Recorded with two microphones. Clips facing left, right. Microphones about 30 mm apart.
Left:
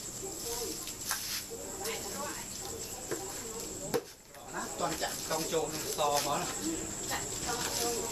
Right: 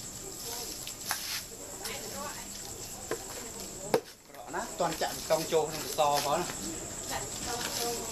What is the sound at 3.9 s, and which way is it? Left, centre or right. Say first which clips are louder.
Chop: right 5 dB; right.